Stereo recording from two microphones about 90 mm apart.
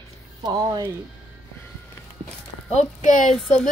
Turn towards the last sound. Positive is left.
turn(degrees=5)  # may be behind; listen again after turning